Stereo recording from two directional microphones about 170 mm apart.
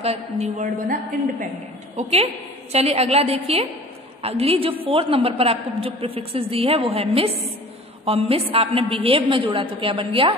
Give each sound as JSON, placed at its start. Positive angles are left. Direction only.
{"t": 0.0, "sound": "a woman's voice", "side_deg": -40}
{"t": 2.0, "sound": "a woman's voice", "side_deg": -40}